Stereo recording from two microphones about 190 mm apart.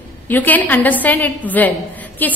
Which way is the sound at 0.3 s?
10° left (ahead or behind).